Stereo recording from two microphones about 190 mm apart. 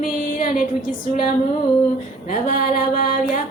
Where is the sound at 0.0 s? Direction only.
45° left (ahead or behind).